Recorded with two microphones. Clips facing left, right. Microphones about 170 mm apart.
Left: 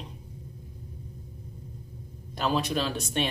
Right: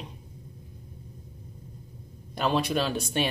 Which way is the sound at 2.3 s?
Centre (ahead or behind).